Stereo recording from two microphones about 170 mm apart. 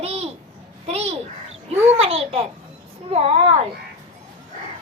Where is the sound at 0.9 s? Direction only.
40° right (ahead or behind).